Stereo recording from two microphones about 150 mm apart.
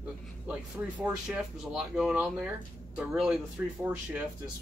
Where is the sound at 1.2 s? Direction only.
5° right (ahead or behind).